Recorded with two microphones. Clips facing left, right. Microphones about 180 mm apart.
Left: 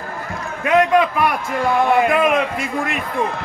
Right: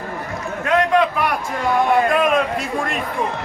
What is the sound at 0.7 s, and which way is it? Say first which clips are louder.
A man's voice: left 2 dB; 5° left (ahead or behind).